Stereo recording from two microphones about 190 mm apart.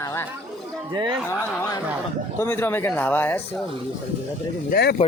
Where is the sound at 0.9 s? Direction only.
25° right (ahead or behind).